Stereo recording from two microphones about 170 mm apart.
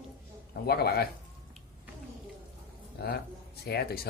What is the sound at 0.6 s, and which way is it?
Speech, 70° left (ahead or behind).